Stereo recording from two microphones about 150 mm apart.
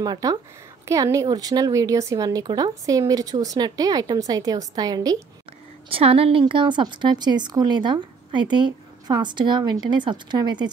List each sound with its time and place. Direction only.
0.0 s a woman's voice: 25° right (ahead or behind)
5.9 s a woman's voice: 40° right (ahead or behind)